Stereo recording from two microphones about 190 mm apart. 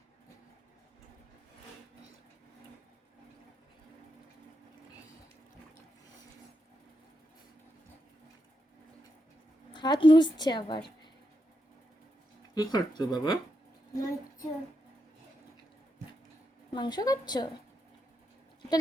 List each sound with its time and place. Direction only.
9.7 s a woman's voice: 25° left (ahead or behind)
12.5 s speech: 20° left (ahead or behind)
13.9 s child singing: 15° left (ahead or behind)
16.7 s speech: 20° left (ahead or behind)